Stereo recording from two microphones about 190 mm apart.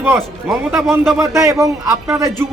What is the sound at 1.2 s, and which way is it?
A man's voice, 15° right (ahead or behind).